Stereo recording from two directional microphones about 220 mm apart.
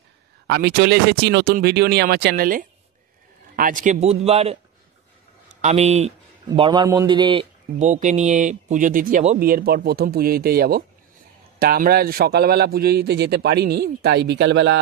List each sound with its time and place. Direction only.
0.5 s a man's voice: 45° right (ahead or behind); by 4.6 s 30° right (ahead or behind)
5.6 s a man's voice: 30° right (ahead or behind); by 14.8 s 55° right (ahead or behind)